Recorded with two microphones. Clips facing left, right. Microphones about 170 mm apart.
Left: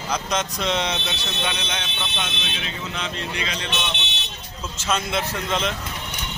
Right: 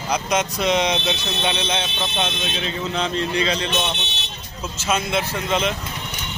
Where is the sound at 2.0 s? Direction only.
35° right (ahead or behind).